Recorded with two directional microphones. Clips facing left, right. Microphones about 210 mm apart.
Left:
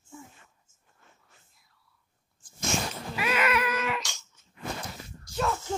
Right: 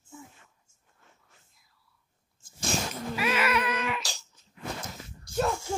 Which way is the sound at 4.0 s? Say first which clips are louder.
Even; 35° right (ahead or behind).